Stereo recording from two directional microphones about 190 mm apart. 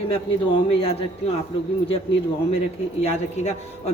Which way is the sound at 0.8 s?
30° left (ahead or behind).